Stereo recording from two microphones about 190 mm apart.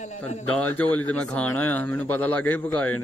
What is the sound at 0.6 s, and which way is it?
Speech, 5° left (ahead or behind).